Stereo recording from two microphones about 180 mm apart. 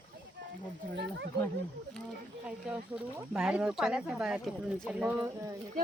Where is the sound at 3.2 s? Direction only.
5° right (ahead or behind).